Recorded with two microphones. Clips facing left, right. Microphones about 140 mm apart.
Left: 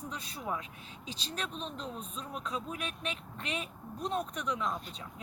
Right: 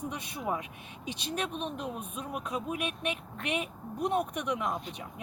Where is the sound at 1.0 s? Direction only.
65° right (ahead or behind).